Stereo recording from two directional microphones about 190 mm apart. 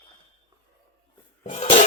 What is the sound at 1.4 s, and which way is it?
Cough, 40° left (ahead or behind).